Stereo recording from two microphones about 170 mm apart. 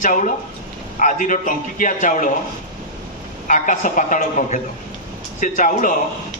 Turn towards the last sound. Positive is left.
turn(degrees=50)  # may be behind; listen again after turning